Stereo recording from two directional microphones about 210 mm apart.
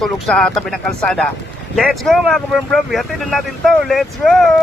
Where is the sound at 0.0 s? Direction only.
Centre (ahead or behind).